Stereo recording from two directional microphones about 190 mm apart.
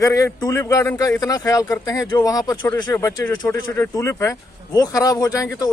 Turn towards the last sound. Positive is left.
turn(degrees=20)  # may be behind; listen again after turning